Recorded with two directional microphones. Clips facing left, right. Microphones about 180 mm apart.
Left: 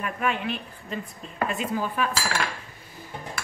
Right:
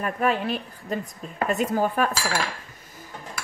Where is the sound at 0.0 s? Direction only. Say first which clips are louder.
Right 4 dB; 40° right (ahead or behind).